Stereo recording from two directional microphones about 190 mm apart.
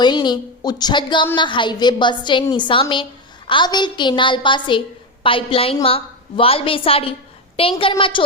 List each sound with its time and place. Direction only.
0.0 s a woman's voice: 25° left (ahead or behind)